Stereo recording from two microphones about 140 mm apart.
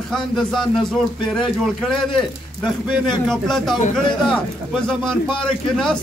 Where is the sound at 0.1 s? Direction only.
Centre (ahead or behind).